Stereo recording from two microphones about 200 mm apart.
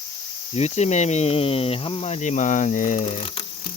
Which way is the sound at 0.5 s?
35° left (ahead or behind).